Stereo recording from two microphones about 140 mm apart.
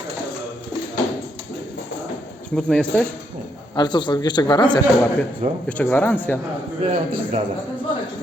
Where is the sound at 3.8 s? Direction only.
30° left (ahead or behind).